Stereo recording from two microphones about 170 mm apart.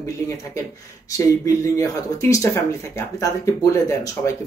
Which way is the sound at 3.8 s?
15° left (ahead or behind).